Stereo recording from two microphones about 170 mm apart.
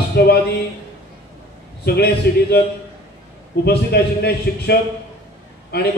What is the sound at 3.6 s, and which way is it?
Speech, 75° left (ahead or behind).